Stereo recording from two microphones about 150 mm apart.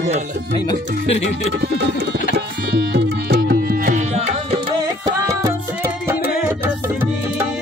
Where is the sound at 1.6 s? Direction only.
90° right; by 4.0 s 65° right (ahead or behind).